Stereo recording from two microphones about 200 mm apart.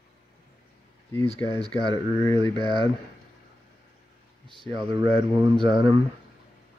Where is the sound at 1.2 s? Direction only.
25° left (ahead or behind).